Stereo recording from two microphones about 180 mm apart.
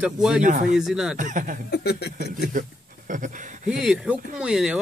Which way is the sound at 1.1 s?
45° right (ahead or behind).